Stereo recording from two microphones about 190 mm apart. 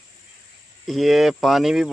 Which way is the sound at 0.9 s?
Centre (ahead or behind).